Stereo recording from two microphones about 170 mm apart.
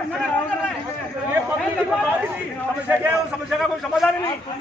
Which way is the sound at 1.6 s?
5° right (ahead or behind).